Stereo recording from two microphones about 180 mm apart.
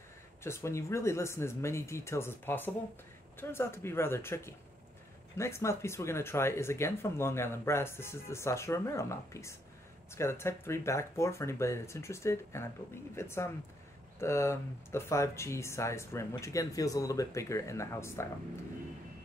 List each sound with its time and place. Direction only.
0.4 s speech: 15° left (ahead or behind)